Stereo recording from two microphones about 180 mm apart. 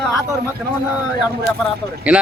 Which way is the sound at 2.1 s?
5° right (ahead or behind).